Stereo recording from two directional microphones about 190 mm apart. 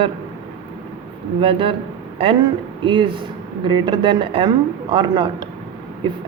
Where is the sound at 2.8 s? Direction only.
25° right (ahead or behind).